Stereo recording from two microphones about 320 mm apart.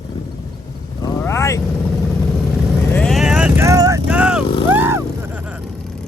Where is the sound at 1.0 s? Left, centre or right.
Centre.